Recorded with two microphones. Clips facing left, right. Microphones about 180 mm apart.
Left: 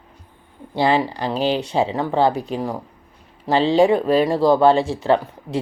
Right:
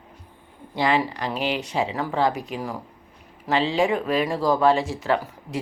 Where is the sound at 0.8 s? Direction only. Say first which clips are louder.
Left 4 dB; 30° left (ahead or behind).